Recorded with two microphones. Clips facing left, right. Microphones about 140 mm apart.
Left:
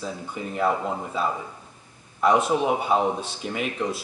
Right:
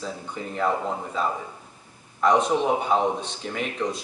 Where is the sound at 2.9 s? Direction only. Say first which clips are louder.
Even; 5° left (ahead or behind).